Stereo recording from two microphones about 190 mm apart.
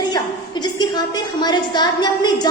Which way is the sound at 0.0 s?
20° left (ahead or behind).